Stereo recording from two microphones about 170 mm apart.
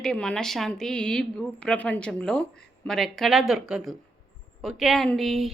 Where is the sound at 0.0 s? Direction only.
5° left (ahead or behind).